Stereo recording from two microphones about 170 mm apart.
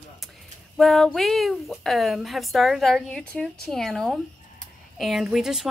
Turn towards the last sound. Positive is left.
turn(degrees=-5)  # may be behind; listen again after turning